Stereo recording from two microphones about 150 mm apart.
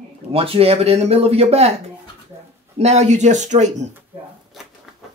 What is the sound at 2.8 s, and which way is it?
Speech, 45° right (ahead or behind).